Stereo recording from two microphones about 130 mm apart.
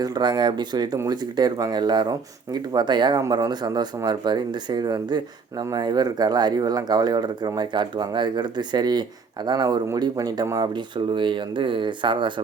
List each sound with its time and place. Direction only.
0.0 s speech: 35° right (ahead or behind)